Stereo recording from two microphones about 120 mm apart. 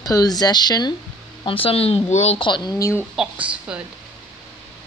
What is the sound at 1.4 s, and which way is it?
Speech, 50° left (ahead or behind).